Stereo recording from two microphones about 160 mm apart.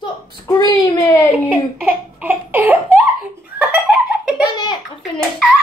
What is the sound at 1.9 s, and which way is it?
Laughter, 10° right (ahead or behind).